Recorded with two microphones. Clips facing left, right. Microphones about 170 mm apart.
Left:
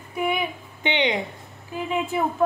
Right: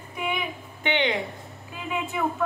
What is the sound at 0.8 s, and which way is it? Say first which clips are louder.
Speech: left 2 dB; 20° left (ahead or behind).